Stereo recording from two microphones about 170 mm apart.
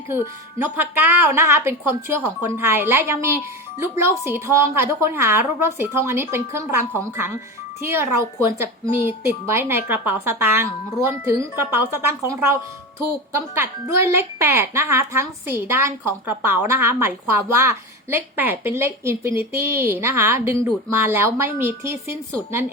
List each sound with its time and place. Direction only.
0.6 s a woman's voice: 10° right (ahead or behind)
7.9 s a woman's voice: 15° right (ahead or behind)
13.3 s a woman's voice: 15° right (ahead or behind)